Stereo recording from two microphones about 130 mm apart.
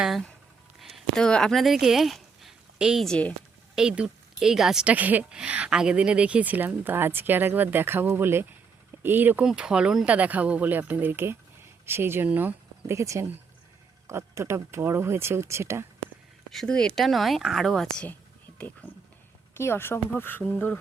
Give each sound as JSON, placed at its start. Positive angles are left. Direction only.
{"t": 0.0, "sound": "speech", "side_deg": 0}
{"t": 3.8, "sound": "a woman's voice", "side_deg": -5}
{"t": 16.5, "sound": "speech", "side_deg": 5}